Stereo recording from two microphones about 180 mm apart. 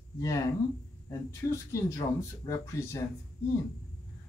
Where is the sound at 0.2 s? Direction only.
20° left (ahead or behind).